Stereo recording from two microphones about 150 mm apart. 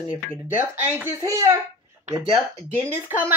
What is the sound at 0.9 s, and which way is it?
Speech, 20° right (ahead or behind).